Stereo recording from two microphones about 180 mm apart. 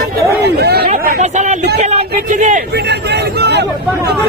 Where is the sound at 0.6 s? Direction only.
60° right (ahead or behind).